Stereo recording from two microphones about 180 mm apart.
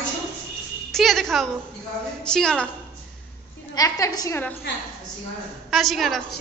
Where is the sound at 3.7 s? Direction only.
20° left (ahead or behind).